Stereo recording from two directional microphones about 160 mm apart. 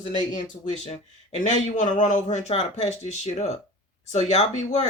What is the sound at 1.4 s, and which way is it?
Speech, 50° left (ahead or behind).